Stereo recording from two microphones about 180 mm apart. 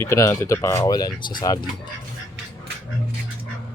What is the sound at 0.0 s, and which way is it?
Speech, 15° left (ahead or behind).